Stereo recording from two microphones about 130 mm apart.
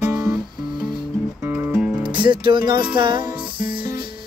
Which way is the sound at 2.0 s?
40° right (ahead or behind).